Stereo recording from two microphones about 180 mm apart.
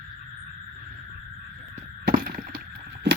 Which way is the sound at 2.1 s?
50° right (ahead or behind).